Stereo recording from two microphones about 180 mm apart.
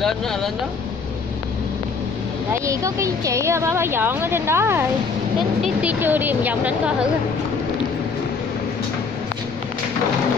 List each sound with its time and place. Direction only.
0.0 s speech: centre (ahead or behind)
2.5 s speech: 15° right (ahead or behind)